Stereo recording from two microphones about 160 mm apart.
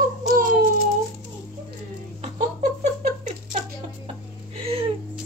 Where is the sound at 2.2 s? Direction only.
45° right (ahead or behind).